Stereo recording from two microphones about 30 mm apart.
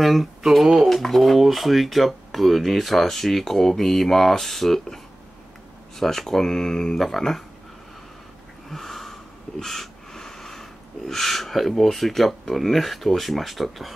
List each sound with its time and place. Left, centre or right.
0.0 s speech: centre
0.8 s speech: centre
5.9 s speech: centre
7.0 s speech: centre
8.6 s sniff: centre
9.6 s a sound: centre
10.4 s speech: centre